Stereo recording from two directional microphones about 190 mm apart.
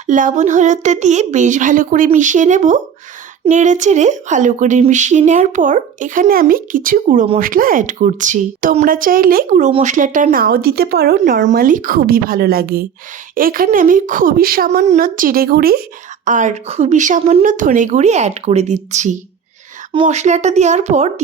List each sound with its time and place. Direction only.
0.1 s speech: 45° right (ahead or behind)
11.2 s speech: 40° right (ahead or behind)
16.2 s speech: 40° right (ahead or behind)